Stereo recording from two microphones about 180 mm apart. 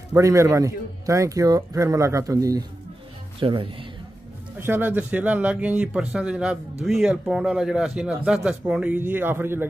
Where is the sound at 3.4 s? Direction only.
30° right (ahead or behind).